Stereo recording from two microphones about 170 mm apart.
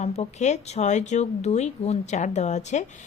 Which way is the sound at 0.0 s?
40° left (ahead or behind).